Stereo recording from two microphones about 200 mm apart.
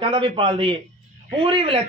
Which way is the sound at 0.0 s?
25° right (ahead or behind).